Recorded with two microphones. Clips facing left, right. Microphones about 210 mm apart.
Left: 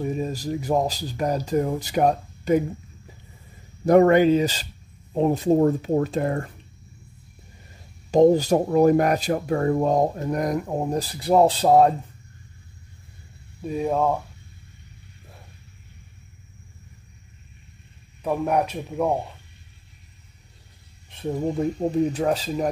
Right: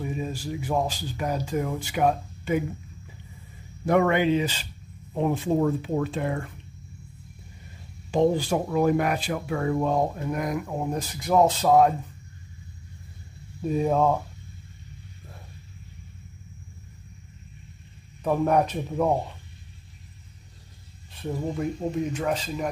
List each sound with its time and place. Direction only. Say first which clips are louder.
0.0 s speech: left 4 dB; 40° left (ahead or behind)
3.8 s speech: left 6 dB; 40° left (ahead or behind)
8.1 s speech: left 6 dB; 40° left (ahead or behind)
13.6 s speech: right 1 dB; 5° left (ahead or behind)
18.2 s speech: right 1 dB; 10° left (ahead or behind)
21.8 s speech: left 7 dB; 40° left (ahead or behind)